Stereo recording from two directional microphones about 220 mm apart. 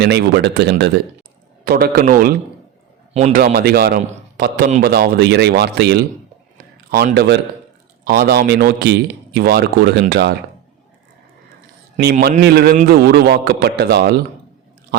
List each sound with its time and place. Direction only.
0.0 s a man's voice: 50° right (ahead or behind)
3.2 s a man's voice: 30° right (ahead or behind)
3.4 s speech: 45° right (ahead or behind)
12.4 s speech: 45° right (ahead or behind)